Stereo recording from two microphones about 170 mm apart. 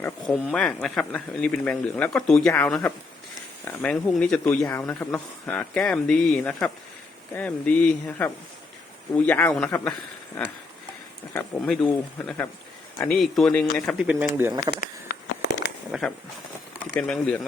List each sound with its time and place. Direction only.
0.0 s speech: 5° left (ahead or behind)
11.3 s speech: 5° left (ahead or behind)
14.0 s speech: 10° right (ahead or behind)
15.0 s fireworks: 80° left
15.9 s speech: 5° left (ahead or behind)